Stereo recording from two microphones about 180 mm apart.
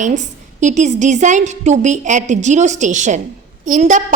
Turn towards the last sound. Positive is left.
turn(degrees=-45)  # may be behind; listen again after turning